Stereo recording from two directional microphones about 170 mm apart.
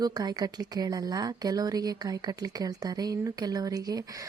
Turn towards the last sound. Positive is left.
turn(degrees=-20)  # may be behind; listen again after turning